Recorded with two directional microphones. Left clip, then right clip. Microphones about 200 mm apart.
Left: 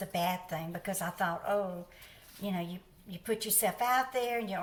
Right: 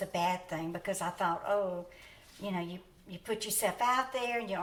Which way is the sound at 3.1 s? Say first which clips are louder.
Left 2 dB; 15° right (ahead or behind).